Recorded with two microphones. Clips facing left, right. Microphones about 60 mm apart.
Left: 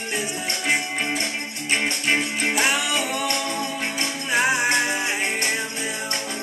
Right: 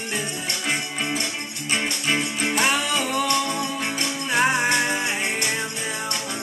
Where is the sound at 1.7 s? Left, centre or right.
Left.